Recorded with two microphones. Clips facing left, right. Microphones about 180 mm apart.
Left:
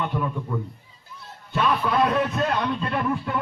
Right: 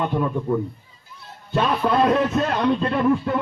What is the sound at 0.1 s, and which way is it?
Speech, 40° right (ahead or behind).